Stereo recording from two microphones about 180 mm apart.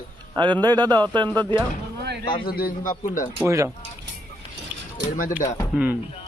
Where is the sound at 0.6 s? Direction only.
20° right (ahead or behind).